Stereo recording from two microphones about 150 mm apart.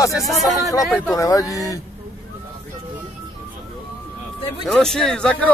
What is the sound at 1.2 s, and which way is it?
Speech, 20° left (ahead or behind).